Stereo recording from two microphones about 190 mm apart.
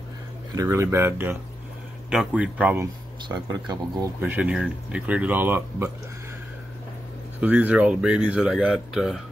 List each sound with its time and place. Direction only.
0.6 s speech: 15° right (ahead or behind)
3.3 s speech: 20° right (ahead or behind)
4.2 s speech: 10° right (ahead or behind)
7.3 s speech: 10° right (ahead or behind)